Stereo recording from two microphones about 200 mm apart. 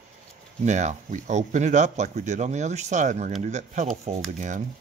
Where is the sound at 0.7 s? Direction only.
35° right (ahead or behind).